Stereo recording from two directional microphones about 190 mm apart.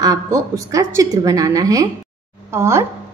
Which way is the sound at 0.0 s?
20° right (ahead or behind).